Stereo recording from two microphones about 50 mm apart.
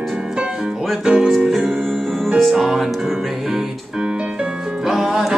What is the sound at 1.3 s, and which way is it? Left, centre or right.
Music, centre.